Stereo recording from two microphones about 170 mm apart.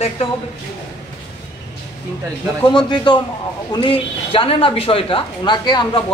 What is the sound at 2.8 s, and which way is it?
A woman's voice, 25° left (ahead or behind).